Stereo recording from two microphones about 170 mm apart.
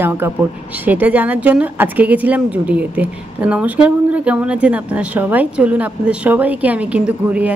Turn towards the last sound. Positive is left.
turn(degrees=-5)  # may be behind; listen again after turning